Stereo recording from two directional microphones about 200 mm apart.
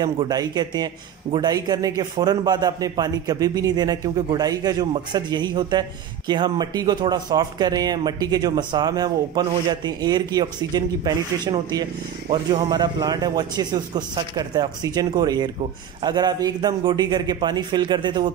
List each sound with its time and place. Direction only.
0.0 s a man's voice: 20° right (ahead or behind)